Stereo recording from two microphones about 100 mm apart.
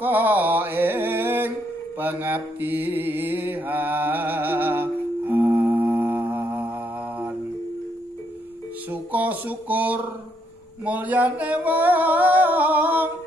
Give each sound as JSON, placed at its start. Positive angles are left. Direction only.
{"t": 0.0, "sound": "music", "side_deg": -20}
{"t": 2.0, "sound": "mantra", "side_deg": -20}
{"t": 8.9, "sound": "a sound", "side_deg": -15}
{"t": 10.9, "sound": "music", "side_deg": -15}